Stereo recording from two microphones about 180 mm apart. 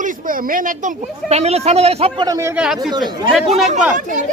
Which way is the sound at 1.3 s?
35° right (ahead or behind).